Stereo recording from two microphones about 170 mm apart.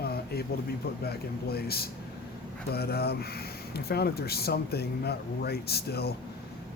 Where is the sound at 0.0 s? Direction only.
65° left (ahead or behind).